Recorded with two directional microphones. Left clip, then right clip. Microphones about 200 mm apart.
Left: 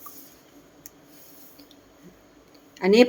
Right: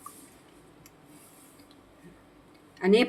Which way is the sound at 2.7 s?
35° left (ahead or behind).